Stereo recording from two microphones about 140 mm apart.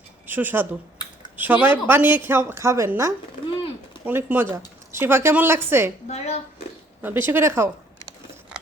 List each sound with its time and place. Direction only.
0.3 s a woman's voice: 15° right (ahead or behind)
6.1 s speech: 50° left (ahead or behind)
7.0 s a woman's voice: 15° right (ahead or behind)